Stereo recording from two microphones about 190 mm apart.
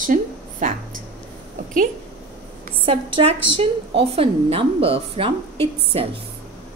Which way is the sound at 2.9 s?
30° right (ahead or behind).